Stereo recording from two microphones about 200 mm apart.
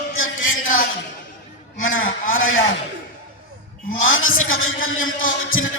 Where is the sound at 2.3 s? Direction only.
80° left.